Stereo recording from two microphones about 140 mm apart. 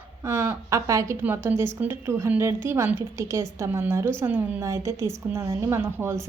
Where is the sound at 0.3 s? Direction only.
20° right (ahead or behind).